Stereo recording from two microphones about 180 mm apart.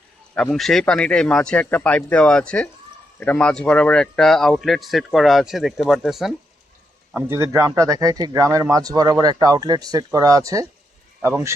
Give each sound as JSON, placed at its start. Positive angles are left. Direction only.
{"t": 0.3, "sound": "speech", "side_deg": 0}